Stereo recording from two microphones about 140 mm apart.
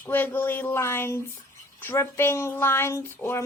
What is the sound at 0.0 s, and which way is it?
Speech, 15° left (ahead or behind).